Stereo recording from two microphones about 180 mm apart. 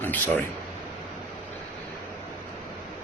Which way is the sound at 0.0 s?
10° left (ahead or behind).